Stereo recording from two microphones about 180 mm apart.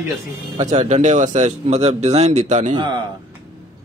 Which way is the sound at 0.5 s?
30° right (ahead or behind).